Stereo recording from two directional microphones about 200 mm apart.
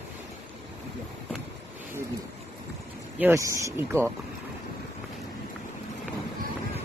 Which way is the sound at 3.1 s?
10° right (ahead or behind).